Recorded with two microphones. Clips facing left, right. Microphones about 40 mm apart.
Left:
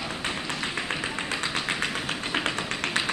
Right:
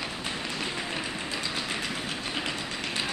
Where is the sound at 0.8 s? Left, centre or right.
Left.